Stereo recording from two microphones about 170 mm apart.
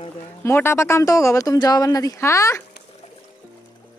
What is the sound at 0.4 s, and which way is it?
Speech, 15° left (ahead or behind).